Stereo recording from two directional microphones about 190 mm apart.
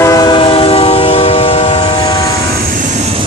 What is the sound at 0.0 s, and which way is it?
Train, 20° left (ahead or behind).